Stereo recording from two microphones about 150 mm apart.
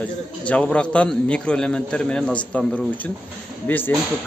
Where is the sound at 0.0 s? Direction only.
10° left (ahead or behind).